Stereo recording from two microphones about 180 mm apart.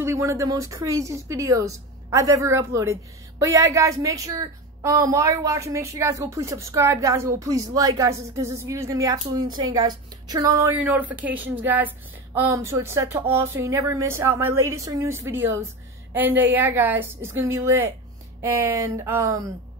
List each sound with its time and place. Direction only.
0.0 s speech: 15° right (ahead or behind)